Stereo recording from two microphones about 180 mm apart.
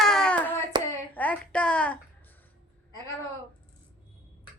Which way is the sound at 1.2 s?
10° left (ahead or behind).